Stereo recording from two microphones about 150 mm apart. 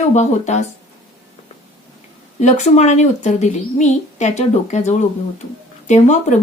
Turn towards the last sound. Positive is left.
turn(degrees=50)  # may be behind; listen again after turning